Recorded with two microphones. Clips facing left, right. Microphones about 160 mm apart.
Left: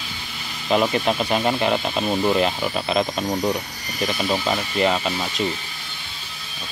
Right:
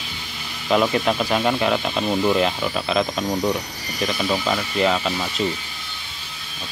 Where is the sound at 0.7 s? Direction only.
5° left (ahead or behind).